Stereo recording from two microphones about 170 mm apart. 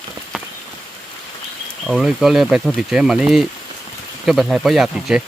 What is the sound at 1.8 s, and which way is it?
Speech, 5° right (ahead or behind).